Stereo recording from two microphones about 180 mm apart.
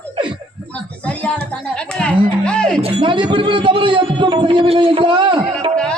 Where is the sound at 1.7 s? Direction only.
5° left (ahead or behind).